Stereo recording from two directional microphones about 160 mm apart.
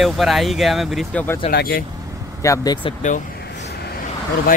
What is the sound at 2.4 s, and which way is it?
Speech, 20° left (ahead or behind).